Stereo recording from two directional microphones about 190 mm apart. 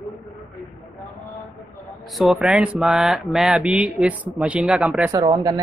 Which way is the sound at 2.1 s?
Centre (ahead or behind).